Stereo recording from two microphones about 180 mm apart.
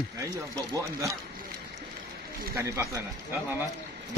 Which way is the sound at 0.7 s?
20° right (ahead or behind).